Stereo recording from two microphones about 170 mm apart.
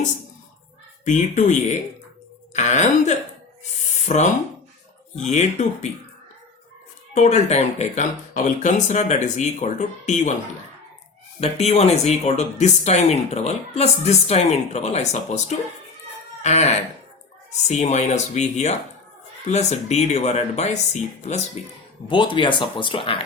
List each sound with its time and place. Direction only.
1.0 s speech: 45° left (ahead or behind)
7.1 s speech: 40° left (ahead or behind)
11.3 s speech: 35° left (ahead or behind)
22.0 s speech: 30° left (ahead or behind)